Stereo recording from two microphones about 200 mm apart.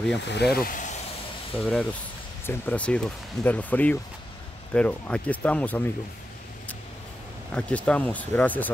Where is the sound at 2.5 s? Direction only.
10° left (ahead or behind).